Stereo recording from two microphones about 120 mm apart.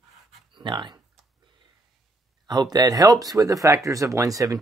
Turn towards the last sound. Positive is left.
turn(degrees=-30)  # may be behind; listen again after turning